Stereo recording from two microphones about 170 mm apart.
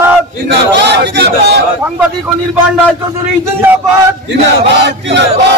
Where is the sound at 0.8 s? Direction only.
80° right.